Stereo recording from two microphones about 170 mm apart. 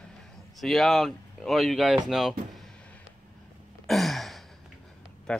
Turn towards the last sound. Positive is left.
turn(degrees=5)  # may be behind; listen again after turning